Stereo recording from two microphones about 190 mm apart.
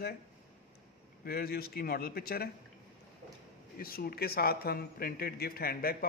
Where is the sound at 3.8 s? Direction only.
50° left (ahead or behind).